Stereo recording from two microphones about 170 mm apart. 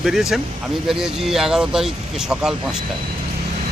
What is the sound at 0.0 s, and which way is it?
Speech, centre (ahead or behind).